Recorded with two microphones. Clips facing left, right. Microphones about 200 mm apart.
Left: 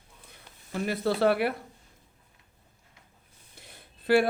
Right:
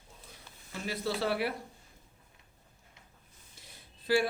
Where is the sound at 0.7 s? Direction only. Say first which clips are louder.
Left 7 dB; 55° left (ahead or behind).